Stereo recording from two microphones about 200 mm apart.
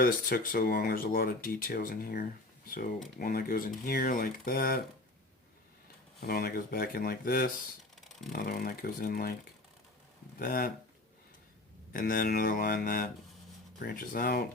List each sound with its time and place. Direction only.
0.0 s speech: 45° left (ahead or behind)
6.2 s speech: 50° left (ahead or behind)
10.4 s speech: 45° left (ahead or behind)
11.9 s speech: 45° left (ahead or behind)